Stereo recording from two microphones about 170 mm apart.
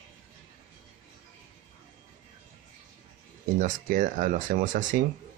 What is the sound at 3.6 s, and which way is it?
Speech, 50° right (ahead or behind).